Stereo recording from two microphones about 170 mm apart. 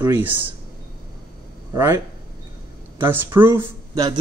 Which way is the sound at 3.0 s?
15° right (ahead or behind).